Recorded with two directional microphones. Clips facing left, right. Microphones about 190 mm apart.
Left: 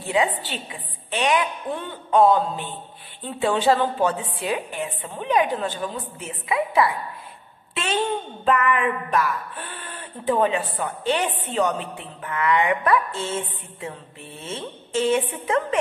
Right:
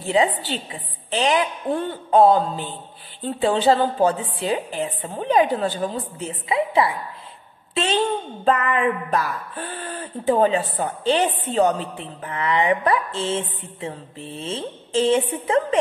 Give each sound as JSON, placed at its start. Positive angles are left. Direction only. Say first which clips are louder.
{"t": 0.0, "sound": "a woman's voice", "louder": "right 3 dB", "side_deg": -30}